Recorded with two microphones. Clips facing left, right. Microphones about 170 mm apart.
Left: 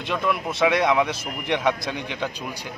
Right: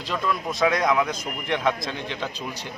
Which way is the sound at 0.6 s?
10° left (ahead or behind).